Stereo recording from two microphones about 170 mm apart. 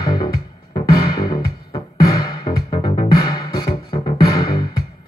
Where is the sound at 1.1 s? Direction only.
20° left (ahead or behind).